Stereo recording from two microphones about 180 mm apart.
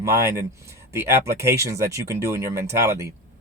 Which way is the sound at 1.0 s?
15° right (ahead or behind).